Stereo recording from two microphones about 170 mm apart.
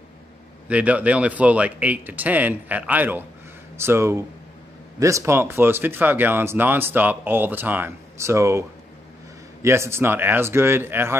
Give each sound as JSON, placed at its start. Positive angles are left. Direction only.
{"t": 0.7, "sound": "speech", "side_deg": -10}